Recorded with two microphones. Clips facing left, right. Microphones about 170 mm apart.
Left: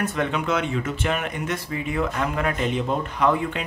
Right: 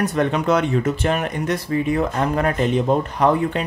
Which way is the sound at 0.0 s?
40° right (ahead or behind).